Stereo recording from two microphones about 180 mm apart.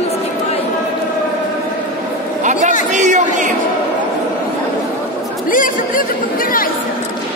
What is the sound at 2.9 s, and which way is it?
Speech, 40° right (ahead or behind).